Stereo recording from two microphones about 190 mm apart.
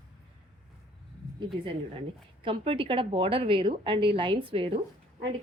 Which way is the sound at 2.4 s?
25° right (ahead or behind).